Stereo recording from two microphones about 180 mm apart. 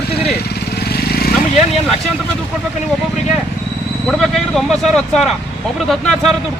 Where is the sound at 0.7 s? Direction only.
60° left (ahead or behind).